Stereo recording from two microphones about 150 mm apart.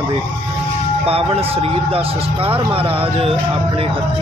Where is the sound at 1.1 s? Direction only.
40° right (ahead or behind).